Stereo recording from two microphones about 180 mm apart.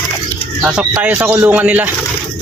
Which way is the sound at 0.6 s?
5° right (ahead or behind).